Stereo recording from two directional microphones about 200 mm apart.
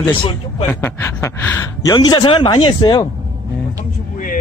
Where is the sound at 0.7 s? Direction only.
10° left (ahead or behind).